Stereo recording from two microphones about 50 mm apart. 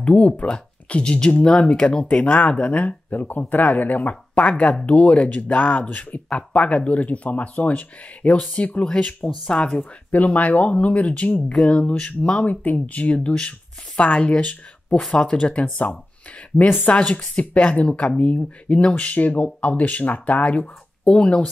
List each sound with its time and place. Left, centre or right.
0.0 s speech: left
9.4 s speech: centre
10.1 s speech: left
15.0 s speech: centre
15.3 s speech: left
16.9 s speech: left